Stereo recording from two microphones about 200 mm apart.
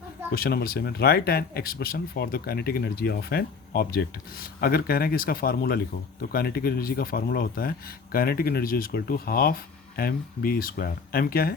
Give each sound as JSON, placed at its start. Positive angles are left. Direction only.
{"t": 0.3, "sound": "speech", "side_deg": 50}